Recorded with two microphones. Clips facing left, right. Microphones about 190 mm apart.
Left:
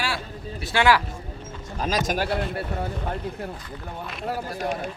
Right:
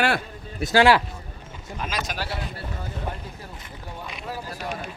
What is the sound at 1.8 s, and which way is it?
Speech, 40° left (ahead or behind).